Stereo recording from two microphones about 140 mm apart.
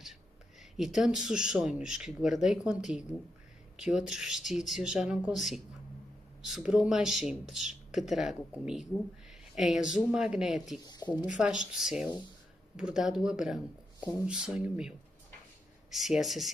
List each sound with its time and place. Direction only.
0.7 s speech: 5° right (ahead or behind)
10.8 s speech: 30° left (ahead or behind)
11.3 s speech: 5° right (ahead or behind)